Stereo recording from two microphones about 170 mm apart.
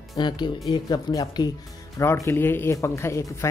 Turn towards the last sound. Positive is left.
turn(degrees=15)  # may be behind; listen again after turning